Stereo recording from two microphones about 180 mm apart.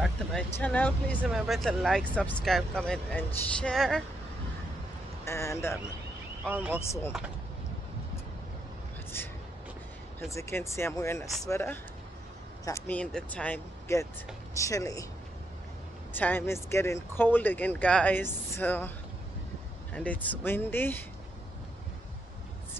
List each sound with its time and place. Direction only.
0.0 s speech: 5° left (ahead or behind)
5.2 s speech: 15° left (ahead or behind)
6.4 s speech: 10° right (ahead or behind)
9.1 s a sound: 10° left (ahead or behind)
10.3 s speech: 15° left (ahead or behind)
16.1 s speech: 10° left (ahead or behind)